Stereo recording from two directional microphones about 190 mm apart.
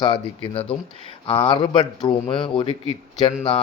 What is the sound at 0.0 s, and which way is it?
Speech, 25° left (ahead or behind).